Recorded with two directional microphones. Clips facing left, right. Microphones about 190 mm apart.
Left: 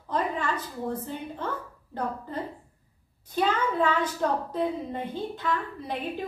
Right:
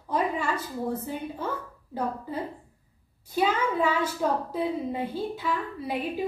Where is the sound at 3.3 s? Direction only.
10° right (ahead or behind).